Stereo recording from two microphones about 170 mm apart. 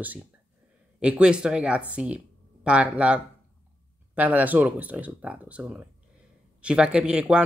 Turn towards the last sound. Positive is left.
turn(degrees=-5)  # may be behind; listen again after turning